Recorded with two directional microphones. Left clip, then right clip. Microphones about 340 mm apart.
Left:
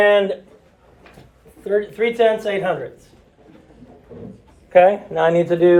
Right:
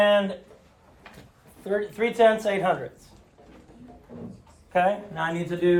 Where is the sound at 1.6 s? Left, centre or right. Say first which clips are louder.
Left 7 dB; centre.